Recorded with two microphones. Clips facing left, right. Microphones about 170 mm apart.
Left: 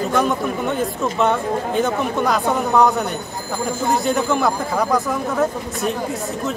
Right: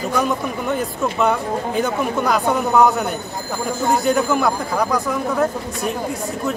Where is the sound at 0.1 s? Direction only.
Centre (ahead or behind).